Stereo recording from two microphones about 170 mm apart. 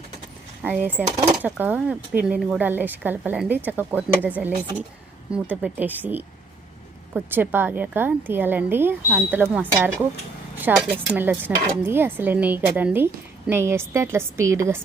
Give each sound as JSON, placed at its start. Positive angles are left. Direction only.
{"t": 0.6, "sound": "cutlery", "side_deg": -10}